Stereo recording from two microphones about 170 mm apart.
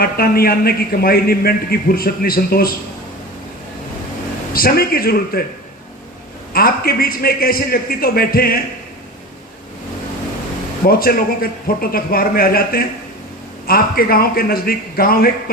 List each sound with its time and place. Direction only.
0.0 s a man's voice: 60° left (ahead or behind)
4.5 s a man's voice: 60° left (ahead or behind)
6.5 s a man's voice: 60° left (ahead or behind)
10.8 s a man's voice: 60° left (ahead or behind)